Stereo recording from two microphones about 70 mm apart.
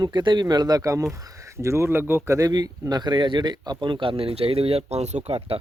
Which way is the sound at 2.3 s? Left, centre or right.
Right.